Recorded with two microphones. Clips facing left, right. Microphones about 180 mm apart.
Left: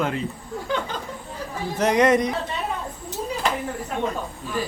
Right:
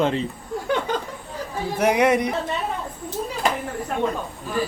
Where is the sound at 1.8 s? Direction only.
10° right (ahead or behind).